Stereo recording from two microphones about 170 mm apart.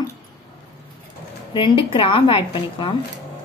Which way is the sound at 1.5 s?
30° left (ahead or behind).